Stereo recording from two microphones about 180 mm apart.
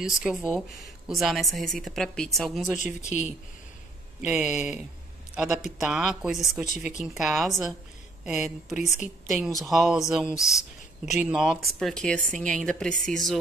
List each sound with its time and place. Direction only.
0.0 s a woman's voice: 5° right (ahead or behind)
3.1 s speech: 40° left (ahead or behind)
4.3 s a woman's voice: 10° right (ahead or behind)
10.3 s speech: 15° left (ahead or behind)
11.1 s a woman's voice: 5° right (ahead or behind)